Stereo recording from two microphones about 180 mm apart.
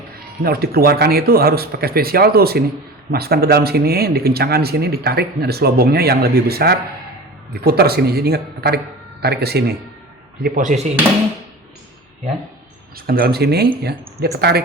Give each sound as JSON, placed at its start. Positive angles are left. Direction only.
{"t": 0.4, "sound": "speech", "side_deg": -60}
{"t": 10.4, "sound": "speech", "side_deg": -45}
{"t": 13.1, "sound": "speech", "side_deg": -60}